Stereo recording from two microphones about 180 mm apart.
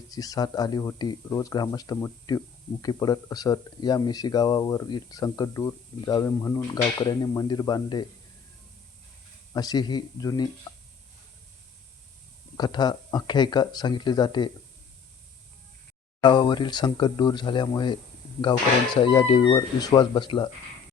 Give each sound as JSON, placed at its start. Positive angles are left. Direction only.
{"t": 0.1, "sound": "speech", "side_deg": 20}
{"t": 9.5, "sound": "speech", "side_deg": 20}
{"t": 12.5, "sound": "speech", "side_deg": 25}
{"t": 16.2, "sound": "speech", "side_deg": 25}